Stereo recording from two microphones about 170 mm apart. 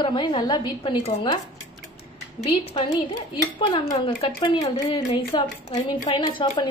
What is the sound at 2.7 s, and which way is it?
A woman's voice, 25° left (ahead or behind).